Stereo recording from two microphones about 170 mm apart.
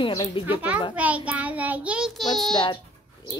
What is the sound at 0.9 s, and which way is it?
Child singing, 10° right (ahead or behind).